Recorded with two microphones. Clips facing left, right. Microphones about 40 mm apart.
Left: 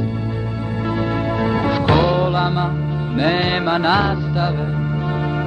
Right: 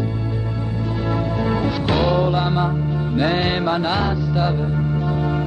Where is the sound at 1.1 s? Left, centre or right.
Centre.